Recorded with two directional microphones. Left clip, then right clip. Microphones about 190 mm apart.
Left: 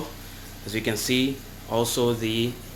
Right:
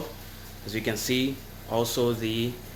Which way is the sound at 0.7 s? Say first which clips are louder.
Left 3 dB; centre (ahead or behind).